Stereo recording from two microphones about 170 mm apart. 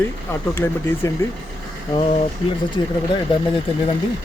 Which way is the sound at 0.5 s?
15° left (ahead or behind).